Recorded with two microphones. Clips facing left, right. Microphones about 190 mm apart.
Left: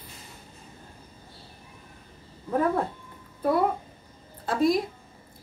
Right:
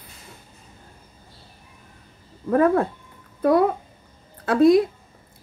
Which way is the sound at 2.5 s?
80° right.